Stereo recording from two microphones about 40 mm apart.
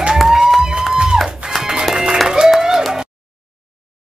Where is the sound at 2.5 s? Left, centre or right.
Centre.